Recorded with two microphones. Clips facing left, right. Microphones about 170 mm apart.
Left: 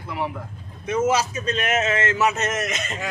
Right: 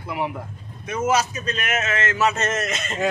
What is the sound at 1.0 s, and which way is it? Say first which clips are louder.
A man's voice: right 1 dB; 30° left (ahead or behind).